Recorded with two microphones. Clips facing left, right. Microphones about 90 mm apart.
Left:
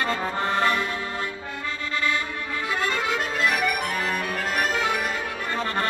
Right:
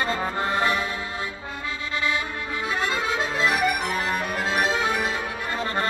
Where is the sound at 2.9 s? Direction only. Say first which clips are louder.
Even; 20° right (ahead or behind).